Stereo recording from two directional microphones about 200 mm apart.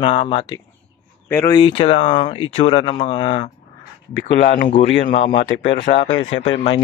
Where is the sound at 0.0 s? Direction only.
25° left (ahead or behind).